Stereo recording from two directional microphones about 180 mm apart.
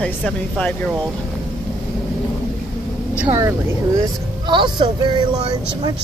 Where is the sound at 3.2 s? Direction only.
20° right (ahead or behind).